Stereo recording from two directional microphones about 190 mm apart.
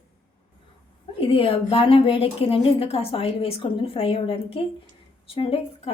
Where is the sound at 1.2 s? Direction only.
30° left (ahead or behind).